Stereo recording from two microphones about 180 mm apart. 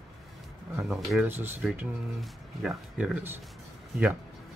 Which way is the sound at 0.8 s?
5° right (ahead or behind).